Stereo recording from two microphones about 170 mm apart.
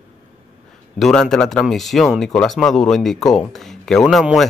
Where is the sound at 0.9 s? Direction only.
Centre (ahead or behind).